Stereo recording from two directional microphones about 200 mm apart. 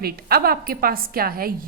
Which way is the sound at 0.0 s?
50° right (ahead or behind).